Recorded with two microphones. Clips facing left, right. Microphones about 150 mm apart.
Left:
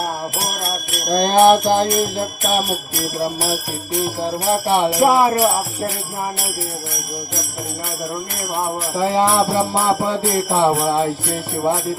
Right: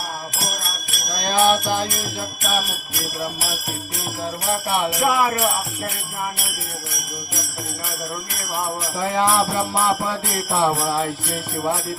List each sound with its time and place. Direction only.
1.0 s music: 45° left (ahead or behind)
4.2 s jingle bell: 25° left (ahead or behind)
9.0 s jingle bell: 25° left (ahead or behind)